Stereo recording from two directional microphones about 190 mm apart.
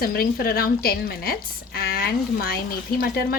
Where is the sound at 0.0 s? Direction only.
50° left (ahead or behind).